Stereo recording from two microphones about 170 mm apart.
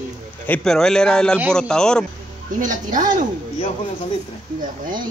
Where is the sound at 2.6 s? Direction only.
50° right (ahead or behind).